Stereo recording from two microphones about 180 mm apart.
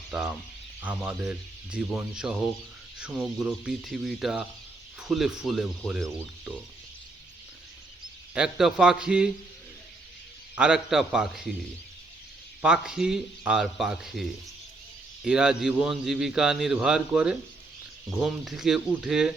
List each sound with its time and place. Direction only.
0.1 s a man's voice: 5° right (ahead or behind)
8.4 s a man's voice: 5° right (ahead or behind)
10.5 s a man's voice: 5° right (ahead or behind)
12.6 s a man's voice: 5° right (ahead or behind)